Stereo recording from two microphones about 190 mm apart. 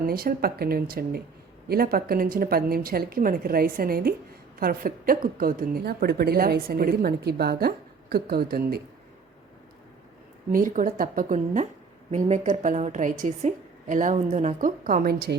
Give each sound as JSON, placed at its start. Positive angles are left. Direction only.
{"t": 0.0, "sound": "a woman's voice", "side_deg": -50}
{"t": 10.5, "sound": "a woman's voice", "side_deg": -45}